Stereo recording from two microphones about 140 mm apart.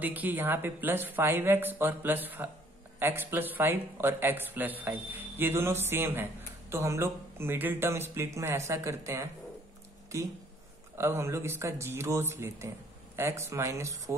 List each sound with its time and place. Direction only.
0.0 s speech: 10° right (ahead or behind)
11.0 s speech: 20° right (ahead or behind)